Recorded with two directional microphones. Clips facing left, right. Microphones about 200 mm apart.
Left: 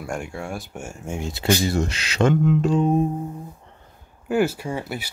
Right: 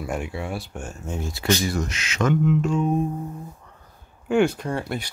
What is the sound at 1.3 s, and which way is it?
Speech, 25° left (ahead or behind).